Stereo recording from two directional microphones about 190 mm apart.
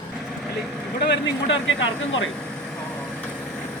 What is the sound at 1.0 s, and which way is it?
Speech, 65° left (ahead or behind).